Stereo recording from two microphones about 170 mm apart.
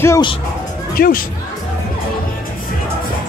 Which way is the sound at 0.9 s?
60° left (ahead or behind).